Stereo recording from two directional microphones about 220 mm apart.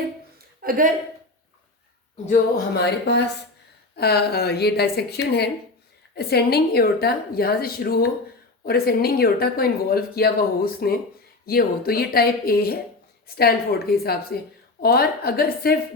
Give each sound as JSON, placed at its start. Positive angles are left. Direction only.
{"t": 0.6, "sound": "speech", "side_deg": -40}
{"t": 2.3, "sound": "speech", "side_deg": 50}